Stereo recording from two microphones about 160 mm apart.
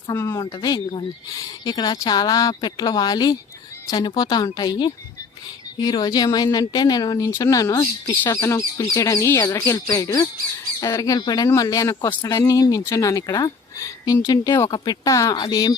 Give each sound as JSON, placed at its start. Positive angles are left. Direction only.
{"t": 0.1, "sound": "speech", "side_deg": 20}